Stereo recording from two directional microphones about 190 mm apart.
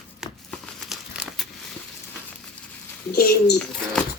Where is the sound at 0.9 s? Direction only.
Centre (ahead or behind).